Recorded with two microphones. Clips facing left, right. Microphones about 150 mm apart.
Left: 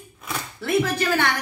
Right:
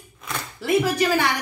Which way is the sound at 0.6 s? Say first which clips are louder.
Right 2 dB; 10° right (ahead or behind).